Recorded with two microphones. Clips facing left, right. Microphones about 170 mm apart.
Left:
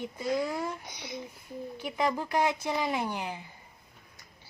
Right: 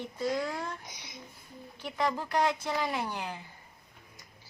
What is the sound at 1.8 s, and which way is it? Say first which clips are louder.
A woman's voice: left 1 dB; 10° left (ahead or behind).